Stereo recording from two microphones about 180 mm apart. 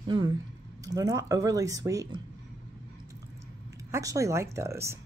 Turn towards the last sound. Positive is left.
turn(degrees=-15)  # may be behind; listen again after turning